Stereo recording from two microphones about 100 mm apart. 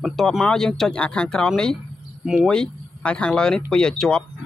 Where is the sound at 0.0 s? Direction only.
Centre (ahead or behind).